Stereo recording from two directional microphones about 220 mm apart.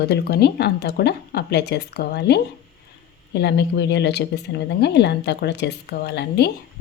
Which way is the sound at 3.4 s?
50° left (ahead or behind).